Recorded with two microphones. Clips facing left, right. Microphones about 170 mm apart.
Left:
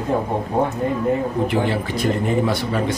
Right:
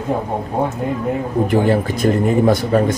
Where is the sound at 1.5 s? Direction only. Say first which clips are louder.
Right 5 dB; 45° right (ahead or behind).